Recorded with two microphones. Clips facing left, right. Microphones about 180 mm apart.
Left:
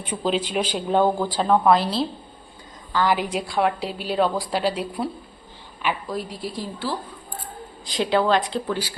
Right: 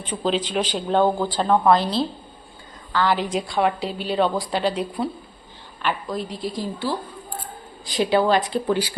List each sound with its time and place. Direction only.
0.0 s a woman's voice: 5° left (ahead or behind)
7.9 s a woman's voice: 5° right (ahead or behind)
8.6 s speech: 15° right (ahead or behind)